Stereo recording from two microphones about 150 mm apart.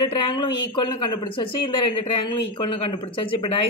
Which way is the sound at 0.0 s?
30° left (ahead or behind).